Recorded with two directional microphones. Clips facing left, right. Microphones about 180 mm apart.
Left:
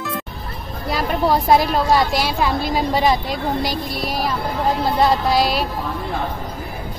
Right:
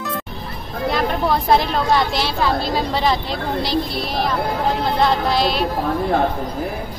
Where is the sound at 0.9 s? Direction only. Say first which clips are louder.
Left 2 dB; 10° left (ahead or behind).